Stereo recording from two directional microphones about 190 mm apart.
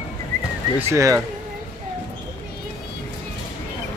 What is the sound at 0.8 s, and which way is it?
Speech, 15° right (ahead or behind).